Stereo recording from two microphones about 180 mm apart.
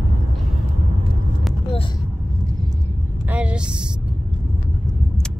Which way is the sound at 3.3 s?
5° right (ahead or behind).